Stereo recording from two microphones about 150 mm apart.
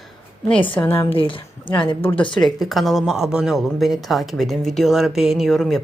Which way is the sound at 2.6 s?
Centre (ahead or behind).